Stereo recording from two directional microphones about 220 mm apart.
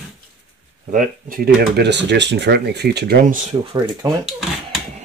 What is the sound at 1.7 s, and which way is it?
Speech, 50° right (ahead or behind).